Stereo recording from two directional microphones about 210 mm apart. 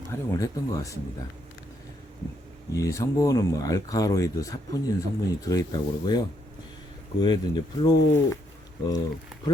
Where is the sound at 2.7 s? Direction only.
15° left (ahead or behind).